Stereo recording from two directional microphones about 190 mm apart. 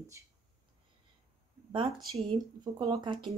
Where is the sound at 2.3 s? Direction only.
25° right (ahead or behind).